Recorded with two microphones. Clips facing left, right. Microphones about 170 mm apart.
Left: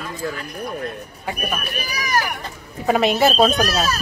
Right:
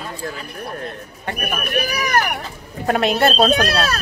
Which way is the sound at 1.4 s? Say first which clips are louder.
Right 6 dB; 60° right (ahead or behind).